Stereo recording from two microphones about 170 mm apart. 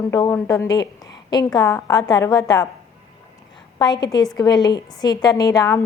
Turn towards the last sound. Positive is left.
turn(degrees=20)  # may be behind; listen again after turning